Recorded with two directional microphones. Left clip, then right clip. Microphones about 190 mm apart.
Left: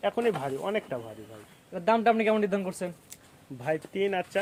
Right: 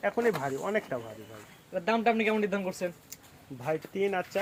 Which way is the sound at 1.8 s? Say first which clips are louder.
Left 3 dB; 55° left (ahead or behind).